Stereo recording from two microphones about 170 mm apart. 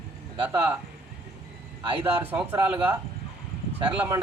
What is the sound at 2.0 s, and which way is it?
Speech, 10° right (ahead or behind).